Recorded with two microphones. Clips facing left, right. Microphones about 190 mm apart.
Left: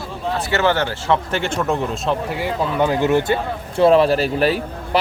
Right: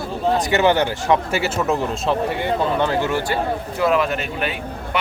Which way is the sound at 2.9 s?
15° left (ahead or behind).